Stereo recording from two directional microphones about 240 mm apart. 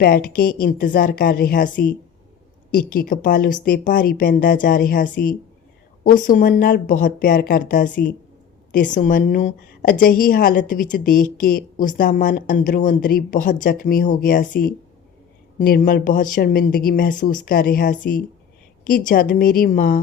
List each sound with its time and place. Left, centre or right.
0.0 s a woman's voice: left